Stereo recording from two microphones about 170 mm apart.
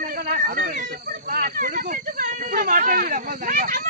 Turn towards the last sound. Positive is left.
turn(degrees=-50)  # may be behind; listen again after turning